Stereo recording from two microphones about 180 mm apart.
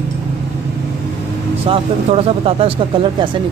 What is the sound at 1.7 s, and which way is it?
Speech, 30° right (ahead or behind).